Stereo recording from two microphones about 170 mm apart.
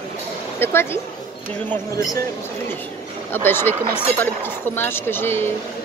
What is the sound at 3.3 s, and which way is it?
Speech, 15° left (ahead or behind).